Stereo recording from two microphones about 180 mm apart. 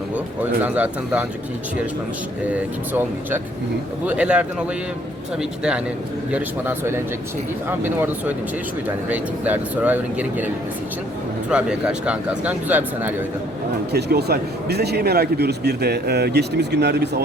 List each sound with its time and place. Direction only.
0.6 s speech: 10° right (ahead or behind)
2.5 s speech: 10° right (ahead or behind)
13.9 s a man's voice: 65° right (ahead or behind)